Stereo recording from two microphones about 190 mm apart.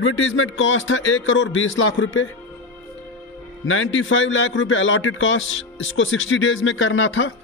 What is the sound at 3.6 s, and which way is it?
A man's voice, 90° left.